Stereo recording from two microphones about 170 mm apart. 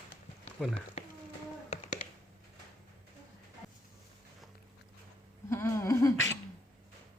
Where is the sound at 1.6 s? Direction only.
45° left (ahead or behind).